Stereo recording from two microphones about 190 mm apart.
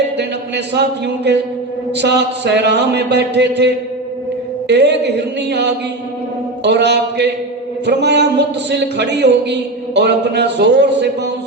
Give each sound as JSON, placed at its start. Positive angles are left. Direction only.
{"t": 0.2, "sound": "a man's voice", "side_deg": -60}
{"t": 4.7, "sound": "a man's voice", "side_deg": -65}